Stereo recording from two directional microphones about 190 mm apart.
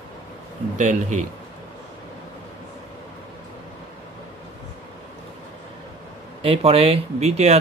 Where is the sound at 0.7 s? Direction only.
40° right (ahead or behind).